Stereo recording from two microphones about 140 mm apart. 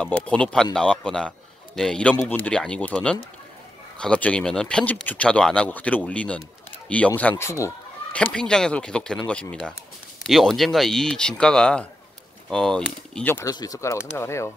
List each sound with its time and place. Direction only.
0.0 s speech: 10° left (ahead or behind)
8.1 s speech: 10° left (ahead or behind)
13.5 s speech: 25° left (ahead or behind)